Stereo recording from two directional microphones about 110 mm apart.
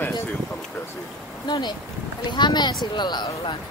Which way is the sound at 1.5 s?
40° left (ahead or behind).